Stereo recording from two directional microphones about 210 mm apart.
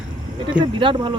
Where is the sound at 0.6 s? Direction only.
25° right (ahead or behind).